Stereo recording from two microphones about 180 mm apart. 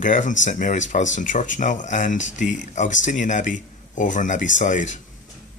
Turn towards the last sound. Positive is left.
turn(degrees=45)  # may be behind; listen again after turning